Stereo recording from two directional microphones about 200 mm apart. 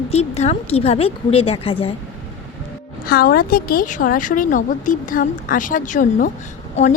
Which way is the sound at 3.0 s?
50° left (ahead or behind).